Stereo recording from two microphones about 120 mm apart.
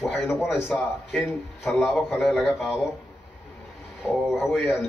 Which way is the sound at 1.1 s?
Centre (ahead or behind).